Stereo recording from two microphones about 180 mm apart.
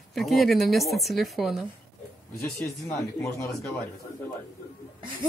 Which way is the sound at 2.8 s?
15° left (ahead or behind).